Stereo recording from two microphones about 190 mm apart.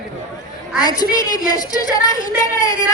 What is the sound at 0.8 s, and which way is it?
A woman's voice, 20° left (ahead or behind).